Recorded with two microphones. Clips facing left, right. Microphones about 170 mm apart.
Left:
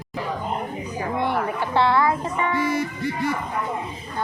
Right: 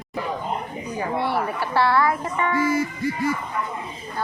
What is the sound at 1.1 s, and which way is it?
A woman's voice, 15° left (ahead or behind).